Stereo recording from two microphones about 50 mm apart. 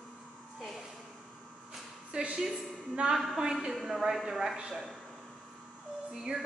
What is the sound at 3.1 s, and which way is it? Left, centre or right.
Speech, centre.